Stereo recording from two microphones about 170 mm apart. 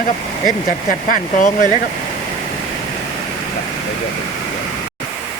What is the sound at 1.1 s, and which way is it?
Speech, 50° left (ahead or behind).